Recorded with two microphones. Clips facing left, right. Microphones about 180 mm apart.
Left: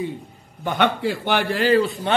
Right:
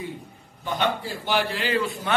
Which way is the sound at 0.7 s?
60° left (ahead or behind).